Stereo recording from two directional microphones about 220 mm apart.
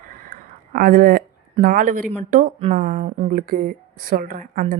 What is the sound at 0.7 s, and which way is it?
Speech, 40° right (ahead or behind).